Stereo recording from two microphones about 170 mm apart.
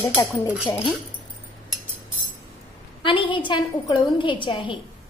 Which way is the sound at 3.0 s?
30° left (ahead or behind).